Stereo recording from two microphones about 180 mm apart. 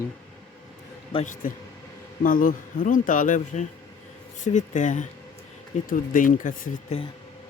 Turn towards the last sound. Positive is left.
turn(degrees=50)  # may be behind; listen again after turning